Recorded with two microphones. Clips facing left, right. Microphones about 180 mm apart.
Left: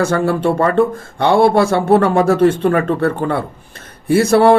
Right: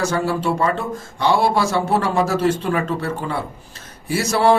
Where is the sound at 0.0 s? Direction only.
55° left (ahead or behind).